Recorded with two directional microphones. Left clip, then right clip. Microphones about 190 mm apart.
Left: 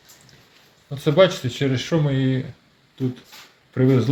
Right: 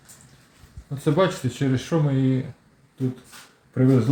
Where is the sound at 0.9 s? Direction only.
Centre (ahead or behind).